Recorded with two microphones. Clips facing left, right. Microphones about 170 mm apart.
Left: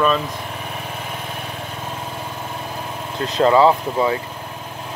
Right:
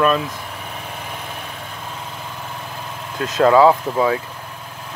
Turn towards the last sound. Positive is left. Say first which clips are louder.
# right 1 dB
turn(degrees=0)  # may be behind; listen again after turning